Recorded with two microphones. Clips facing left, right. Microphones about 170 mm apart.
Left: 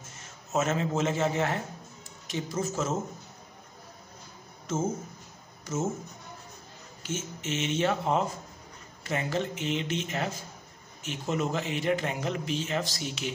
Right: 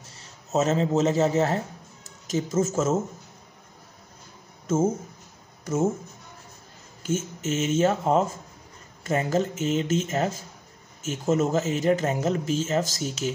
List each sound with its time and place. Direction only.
0.0 s a man's voice: 35° right (ahead or behind)
5.7 s a man's voice: 55° right (ahead or behind)
7.0 s a man's voice: 45° right (ahead or behind)